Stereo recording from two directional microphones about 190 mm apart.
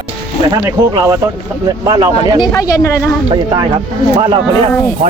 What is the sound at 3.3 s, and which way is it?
Speech, 25° right (ahead or behind).